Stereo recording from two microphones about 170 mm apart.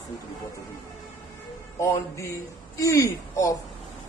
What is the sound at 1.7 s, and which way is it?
Music, 15° left (ahead or behind).